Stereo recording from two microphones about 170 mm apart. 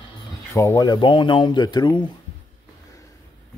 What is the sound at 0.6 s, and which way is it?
Speech, 20° left (ahead or behind).